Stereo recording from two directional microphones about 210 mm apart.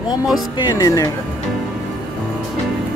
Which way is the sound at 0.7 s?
15° left (ahead or behind).